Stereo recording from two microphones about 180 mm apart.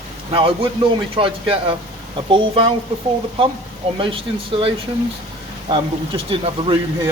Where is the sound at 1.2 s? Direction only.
30° right (ahead or behind).